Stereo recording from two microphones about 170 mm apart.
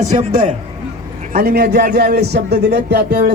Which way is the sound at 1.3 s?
65° right (ahead or behind).